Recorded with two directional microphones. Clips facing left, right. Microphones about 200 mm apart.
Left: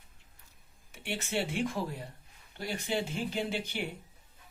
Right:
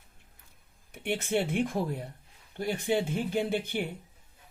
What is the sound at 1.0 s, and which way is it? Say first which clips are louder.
Speech: right 5 dB; 55° right (ahead or behind).